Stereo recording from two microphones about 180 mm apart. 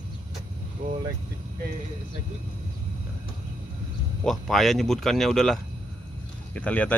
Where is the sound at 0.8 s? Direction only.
55° right (ahead or behind).